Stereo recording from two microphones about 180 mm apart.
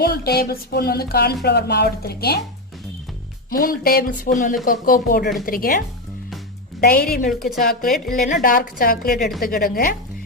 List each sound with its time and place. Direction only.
0.0 s speech: 60° left (ahead or behind)
3.5 s speech: 55° left (ahead or behind)
6.8 s speech: 60° left (ahead or behind)
7.9 s a woman's voice: centre (ahead or behind)
8.3 s speech: 55° left (ahead or behind)